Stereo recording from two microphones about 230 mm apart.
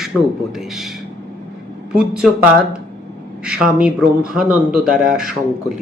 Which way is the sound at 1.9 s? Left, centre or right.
Centre.